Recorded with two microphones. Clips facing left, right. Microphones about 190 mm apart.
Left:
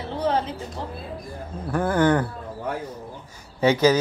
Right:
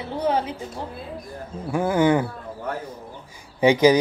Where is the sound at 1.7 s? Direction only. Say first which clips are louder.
Right 1 dB; 10° right (ahead or behind).